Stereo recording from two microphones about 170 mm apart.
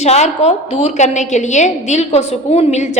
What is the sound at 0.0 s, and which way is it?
A woman's voice, 40° left (ahead or behind).